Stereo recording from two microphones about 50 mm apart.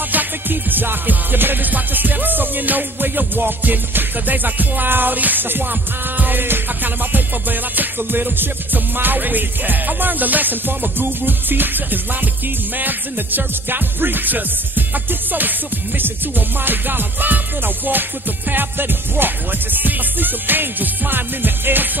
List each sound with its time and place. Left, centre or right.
0.1 s music: right
16.0 s music: right
18.5 s music: right